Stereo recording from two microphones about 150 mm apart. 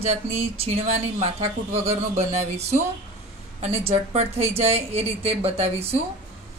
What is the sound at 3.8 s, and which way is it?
A woman's voice, 45° right (ahead or behind).